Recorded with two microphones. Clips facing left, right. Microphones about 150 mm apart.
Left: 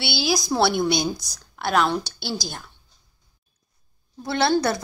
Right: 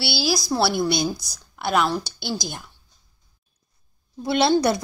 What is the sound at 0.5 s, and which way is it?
A woman's voice, 5° right (ahead or behind).